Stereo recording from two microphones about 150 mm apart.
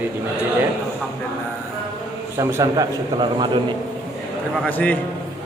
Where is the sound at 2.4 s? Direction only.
20° right (ahead or behind).